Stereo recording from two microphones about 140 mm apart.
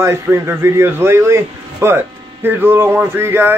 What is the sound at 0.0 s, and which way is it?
A man's voice, 20° right (ahead or behind).